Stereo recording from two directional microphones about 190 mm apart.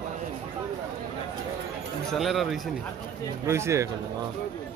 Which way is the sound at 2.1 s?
Centre (ahead or behind).